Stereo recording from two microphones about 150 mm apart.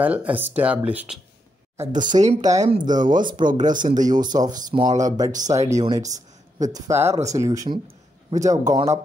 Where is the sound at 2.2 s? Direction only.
50° right (ahead or behind).